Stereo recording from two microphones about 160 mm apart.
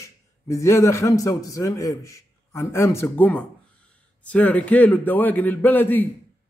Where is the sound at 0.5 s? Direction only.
20° left (ahead or behind).